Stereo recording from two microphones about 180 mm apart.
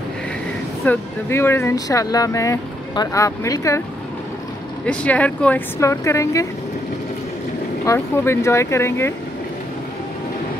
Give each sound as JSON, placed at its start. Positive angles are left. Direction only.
{"t": 0.8, "sound": "speech", "side_deg": 15}
{"t": 4.8, "sound": "speech", "side_deg": 10}
{"t": 7.8, "sound": "speech", "side_deg": 15}